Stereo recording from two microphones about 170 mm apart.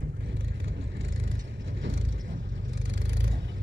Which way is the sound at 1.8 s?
90° right.